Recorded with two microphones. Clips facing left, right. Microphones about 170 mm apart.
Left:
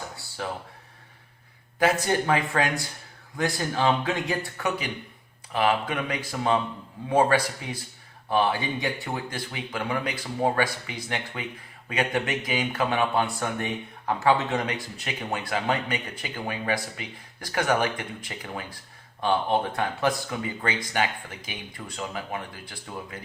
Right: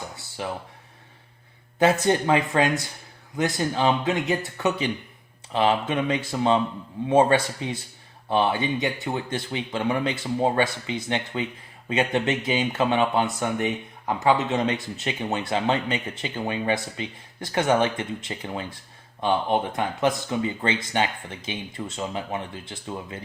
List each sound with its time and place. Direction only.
1.8 s speech: 20° right (ahead or behind)